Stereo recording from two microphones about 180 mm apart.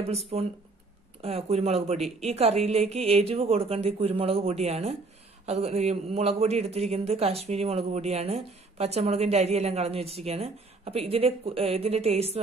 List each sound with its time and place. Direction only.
0.0 s a man's voice: 35° right (ahead or behind)
2.0 s speech: centre (ahead or behind)
2.2 s a man's voice: 35° right (ahead or behind)